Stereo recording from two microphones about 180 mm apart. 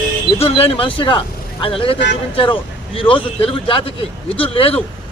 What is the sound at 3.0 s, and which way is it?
Speech, 30° left (ahead or behind).